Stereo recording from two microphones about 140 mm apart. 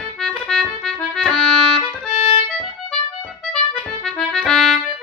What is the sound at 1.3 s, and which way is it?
Music, 45° left (ahead or behind).